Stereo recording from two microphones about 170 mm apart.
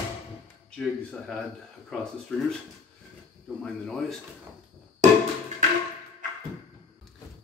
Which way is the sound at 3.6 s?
Centre (ahead or behind).